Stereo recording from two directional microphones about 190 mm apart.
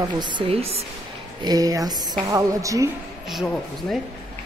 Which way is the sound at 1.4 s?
20° right (ahead or behind).